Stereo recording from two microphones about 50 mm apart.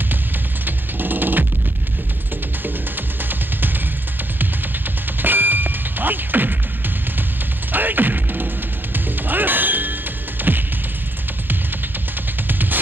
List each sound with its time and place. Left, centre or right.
0.7 s a sound: right
3.3 s music: right
5.2 s ding: right
7.7 s music: right
8.9 s clang: right
10.4 s music: right
12.4 s music: right